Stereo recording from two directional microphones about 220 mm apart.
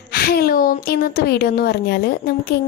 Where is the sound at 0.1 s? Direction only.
45° left (ahead or behind).